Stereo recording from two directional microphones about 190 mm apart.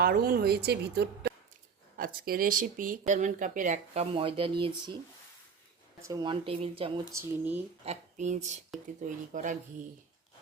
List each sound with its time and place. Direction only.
0.0 s a woman's voice: 55° right (ahead or behind)
4.1 s speech: 30° right (ahead or behind)
6.0 s speech: 20° right (ahead or behind)
7.0 s speech: 10° right (ahead or behind)
7.9 s speech: 40° right (ahead or behind)